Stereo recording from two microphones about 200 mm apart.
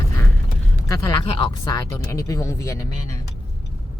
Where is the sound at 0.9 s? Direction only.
15° left (ahead or behind).